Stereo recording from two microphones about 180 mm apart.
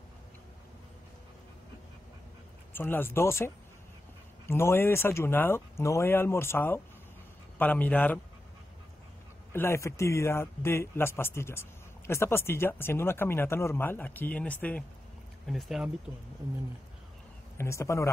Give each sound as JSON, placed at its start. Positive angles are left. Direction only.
{"t": 2.7, "sound": "speech", "side_deg": 10}
{"t": 9.5, "sound": "speech", "side_deg": 15}
{"t": 17.6, "sound": "speech", "side_deg": 15}